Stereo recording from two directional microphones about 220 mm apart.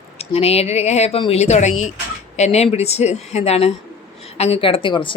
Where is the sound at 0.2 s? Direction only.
25° left (ahead or behind).